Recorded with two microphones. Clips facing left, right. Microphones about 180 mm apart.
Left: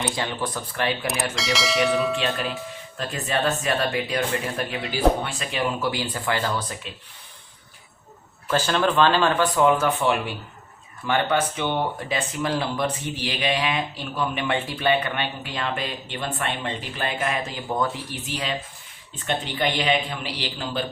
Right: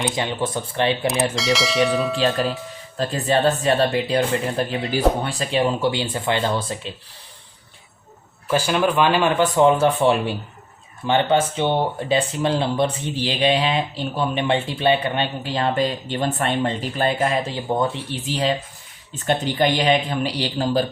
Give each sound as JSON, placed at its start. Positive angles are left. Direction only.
{"t": 0.0, "sound": "speech", "side_deg": -20}
{"t": 1.4, "sound": "speech", "side_deg": 0}
{"t": 3.0, "sound": "speech", "side_deg": -35}
{"t": 8.4, "sound": "speech", "side_deg": -10}